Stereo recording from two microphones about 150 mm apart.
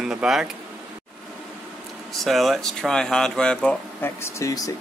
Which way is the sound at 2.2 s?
Centre (ahead or behind).